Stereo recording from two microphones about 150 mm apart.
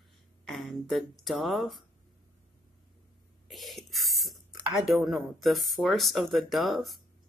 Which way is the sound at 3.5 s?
Centre (ahead or behind).